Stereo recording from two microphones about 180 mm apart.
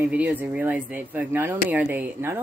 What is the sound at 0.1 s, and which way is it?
Speech, 10° right (ahead or behind).